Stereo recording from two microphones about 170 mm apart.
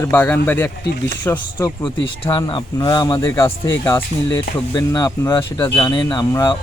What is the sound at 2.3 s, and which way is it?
Speech, 25° left (ahead or behind).